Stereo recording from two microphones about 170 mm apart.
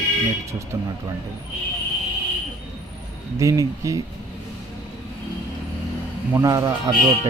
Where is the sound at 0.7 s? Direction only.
20° right (ahead or behind).